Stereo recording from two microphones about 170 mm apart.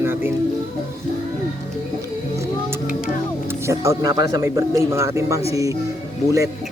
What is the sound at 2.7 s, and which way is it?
Music, 10° right (ahead or behind).